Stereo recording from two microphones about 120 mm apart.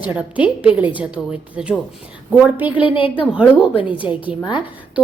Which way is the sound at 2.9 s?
45° left (ahead or behind).